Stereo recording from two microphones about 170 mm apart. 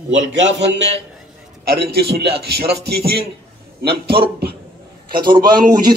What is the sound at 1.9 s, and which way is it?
Speech, 75° right (ahead or behind).